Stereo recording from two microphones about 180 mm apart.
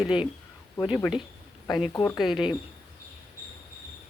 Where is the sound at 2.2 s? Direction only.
Centre (ahead or behind).